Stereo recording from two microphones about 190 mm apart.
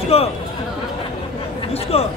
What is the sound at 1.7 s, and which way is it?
Chatter, 30° left (ahead or behind).